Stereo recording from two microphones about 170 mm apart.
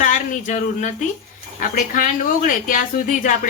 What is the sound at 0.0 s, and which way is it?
Speech, 45° left (ahead or behind).